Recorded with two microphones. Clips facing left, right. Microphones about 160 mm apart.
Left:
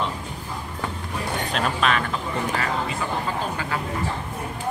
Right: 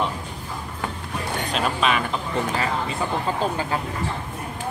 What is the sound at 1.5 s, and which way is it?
Speech, 5° right (ahead or behind).